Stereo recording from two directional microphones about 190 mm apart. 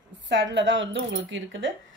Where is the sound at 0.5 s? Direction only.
75° right (ahead or behind).